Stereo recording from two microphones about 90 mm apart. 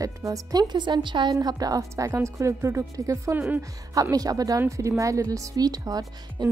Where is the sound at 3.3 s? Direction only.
20° right (ahead or behind).